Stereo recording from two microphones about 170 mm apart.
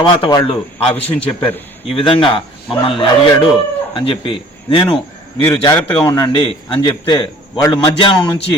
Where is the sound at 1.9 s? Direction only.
30° left (ahead or behind).